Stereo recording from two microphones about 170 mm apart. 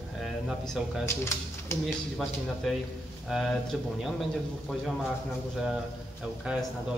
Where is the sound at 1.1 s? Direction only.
15° left (ahead or behind).